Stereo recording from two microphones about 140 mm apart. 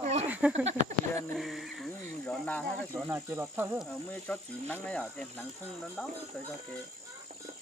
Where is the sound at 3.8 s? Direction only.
10° left (ahead or behind).